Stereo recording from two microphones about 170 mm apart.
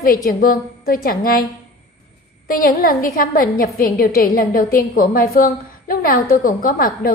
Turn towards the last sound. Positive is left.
turn(degrees=55)  # may be behind; listen again after turning